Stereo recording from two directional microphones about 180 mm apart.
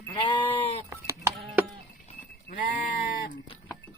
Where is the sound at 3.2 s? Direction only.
50° left (ahead or behind).